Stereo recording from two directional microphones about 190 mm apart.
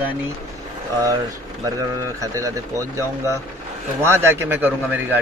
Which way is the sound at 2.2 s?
15° right (ahead or behind).